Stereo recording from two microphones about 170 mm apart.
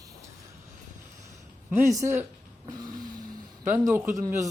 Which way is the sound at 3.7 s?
15° right (ahead or behind).